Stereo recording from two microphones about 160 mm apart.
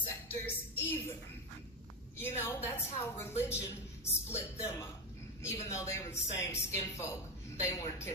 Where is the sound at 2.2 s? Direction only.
15° left (ahead or behind).